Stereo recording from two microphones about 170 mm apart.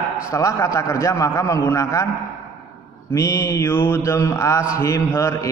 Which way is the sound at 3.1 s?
15° left (ahead or behind).